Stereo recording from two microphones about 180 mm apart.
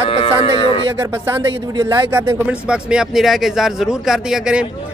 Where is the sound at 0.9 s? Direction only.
15° right (ahead or behind).